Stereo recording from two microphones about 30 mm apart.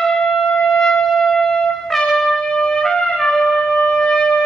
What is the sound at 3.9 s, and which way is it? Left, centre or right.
Wind instrument, left.